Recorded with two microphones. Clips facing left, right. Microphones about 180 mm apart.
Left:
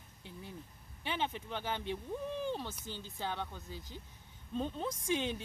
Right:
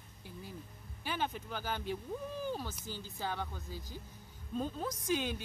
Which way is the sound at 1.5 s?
25° left (ahead or behind).